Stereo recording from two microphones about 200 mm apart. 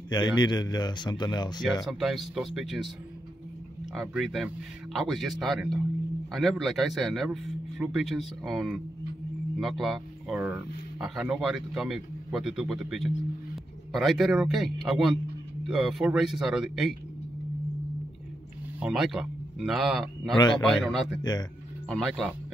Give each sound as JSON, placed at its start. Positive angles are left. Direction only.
{"t": 0.1, "sound": "speech", "side_deg": 20}
{"t": 1.9, "sound": "speech", "side_deg": 0}
{"t": 3.9, "sound": "speech", "side_deg": 0}
{"t": 18.8, "sound": "a man's voice", "side_deg": 0}
{"t": 21.2, "sound": "speech", "side_deg": 20}
{"t": 21.8, "sound": "speech", "side_deg": 0}